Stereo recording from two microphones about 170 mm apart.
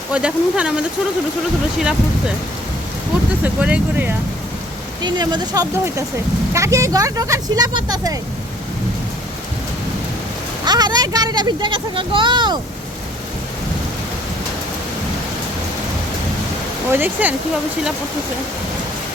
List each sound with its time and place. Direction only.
0.1 s speech: 5° right (ahead or behind)
1.8 s speech: 5° right (ahead or behind)
3.4 s speech: 10° right (ahead or behind)
5.0 s speech: 25° right (ahead or behind)
10.7 s speech: 25° right (ahead or behind)
16.9 s speech: 10° right (ahead or behind)